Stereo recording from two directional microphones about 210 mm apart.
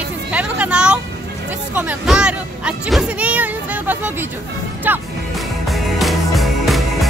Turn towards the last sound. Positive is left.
turn(degrees=0)  # may be behind; listen again after turning